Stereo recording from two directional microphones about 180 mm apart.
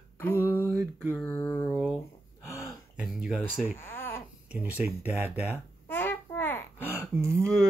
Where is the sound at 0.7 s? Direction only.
15° right (ahead or behind).